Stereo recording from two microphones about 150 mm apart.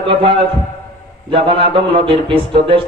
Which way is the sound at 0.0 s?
35° right (ahead or behind).